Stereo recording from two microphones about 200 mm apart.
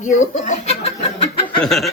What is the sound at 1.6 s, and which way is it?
Speech, centre (ahead or behind).